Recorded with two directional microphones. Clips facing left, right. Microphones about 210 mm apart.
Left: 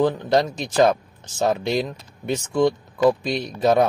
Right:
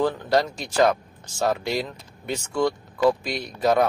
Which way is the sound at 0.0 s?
20° left (ahead or behind).